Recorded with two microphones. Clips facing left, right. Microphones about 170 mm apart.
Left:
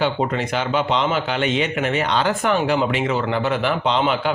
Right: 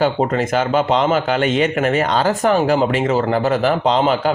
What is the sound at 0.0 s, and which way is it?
A man's voice, 45° right (ahead or behind).